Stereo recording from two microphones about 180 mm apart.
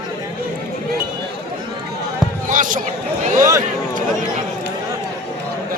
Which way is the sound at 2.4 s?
45° right (ahead or behind).